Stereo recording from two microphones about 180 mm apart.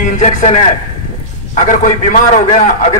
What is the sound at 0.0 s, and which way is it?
A man's voice, 45° left (ahead or behind).